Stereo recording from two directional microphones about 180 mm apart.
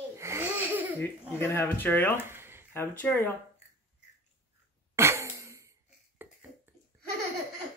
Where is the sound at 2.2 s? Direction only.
15° right (ahead or behind).